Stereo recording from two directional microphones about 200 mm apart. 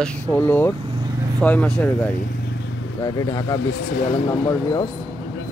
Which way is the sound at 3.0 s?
20° left (ahead or behind).